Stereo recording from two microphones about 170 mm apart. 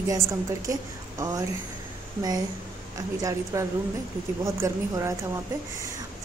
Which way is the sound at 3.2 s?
20° right (ahead or behind).